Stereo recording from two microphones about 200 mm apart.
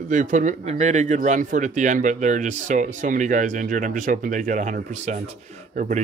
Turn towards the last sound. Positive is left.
turn(degrees=-40)  # may be behind; listen again after turning